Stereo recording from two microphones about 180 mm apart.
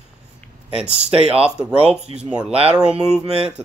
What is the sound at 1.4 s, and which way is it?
Speech, 5° right (ahead or behind).